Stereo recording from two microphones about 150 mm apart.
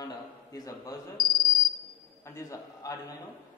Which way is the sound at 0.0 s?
25° left (ahead or behind).